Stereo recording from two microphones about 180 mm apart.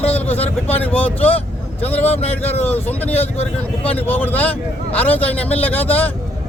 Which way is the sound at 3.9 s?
10° left (ahead or behind).